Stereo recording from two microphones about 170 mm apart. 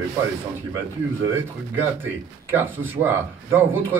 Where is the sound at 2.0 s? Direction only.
10° right (ahead or behind).